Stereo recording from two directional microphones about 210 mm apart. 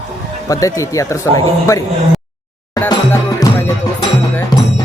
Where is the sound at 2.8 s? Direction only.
15° left (ahead or behind).